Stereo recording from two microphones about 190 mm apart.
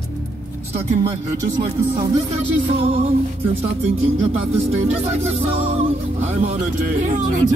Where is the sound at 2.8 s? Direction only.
30° right (ahead or behind).